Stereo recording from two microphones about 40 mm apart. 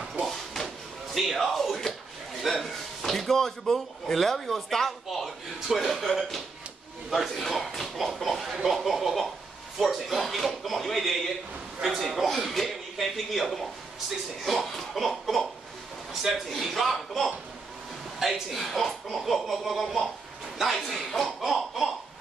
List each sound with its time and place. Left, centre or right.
0.2 s a sound: centre
1.1 s slap: centre
2.4 s a man's voice: centre
16.1 s a sound: centre
16.4 s speech: centre
18.2 s a man's voice: centre
18.6 s speech: centre